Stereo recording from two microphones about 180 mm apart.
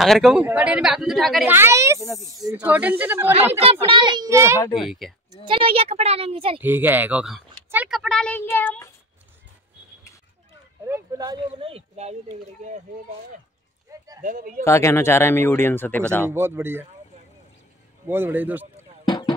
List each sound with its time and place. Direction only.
0.0 s speech: centre (ahead or behind)
1.5 s speech: 15° right (ahead or behind)
2.5 s speech: 10° right (ahead or behind)
3.8 s speech: 25° right (ahead or behind)
4.7 s speech: centre (ahead or behind)
5.4 s a woman's voice: 30° right (ahead or behind)
6.6 s speech: 10° right (ahead or behind); by 8.8 s 10° left (ahead or behind)
10.9 s speech: 20° right (ahead or behind)
13.9 s a sound: 20° right (ahead or behind)
14.2 s speech: 50° right (ahead or behind)
14.6 s speech: 15° left (ahead or behind)
16.3 s speech: 15° right (ahead or behind)
18.0 s speech: 10° right (ahead or behind)
19.0 s a sound: 25° left (ahead or behind)